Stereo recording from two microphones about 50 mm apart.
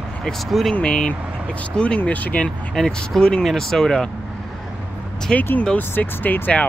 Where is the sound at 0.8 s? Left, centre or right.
Left.